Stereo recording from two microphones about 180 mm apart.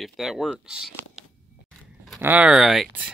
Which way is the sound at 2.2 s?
5° right (ahead or behind).